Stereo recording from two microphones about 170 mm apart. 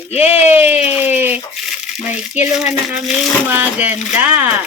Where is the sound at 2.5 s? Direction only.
Centre (ahead or behind).